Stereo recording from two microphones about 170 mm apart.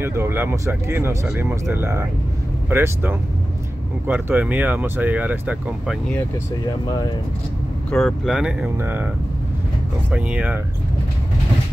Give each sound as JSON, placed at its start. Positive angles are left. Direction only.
{"t": 0.0, "sound": "speech", "side_deg": -15}
{"t": 7.9, "sound": "speech", "side_deg": 0}
{"t": 10.1, "sound": "speech", "side_deg": -5}